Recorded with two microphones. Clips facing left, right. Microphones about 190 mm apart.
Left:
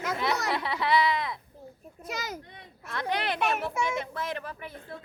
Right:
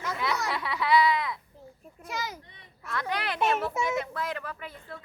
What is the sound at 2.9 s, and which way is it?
A child's voice, 20° left (ahead or behind).